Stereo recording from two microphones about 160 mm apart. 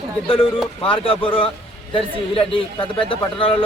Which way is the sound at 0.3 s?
35° left (ahead or behind).